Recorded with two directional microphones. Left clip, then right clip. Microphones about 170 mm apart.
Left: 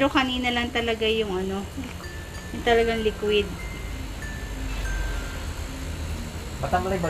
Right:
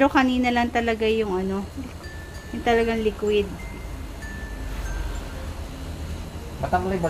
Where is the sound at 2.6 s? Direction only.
65° right (ahead or behind).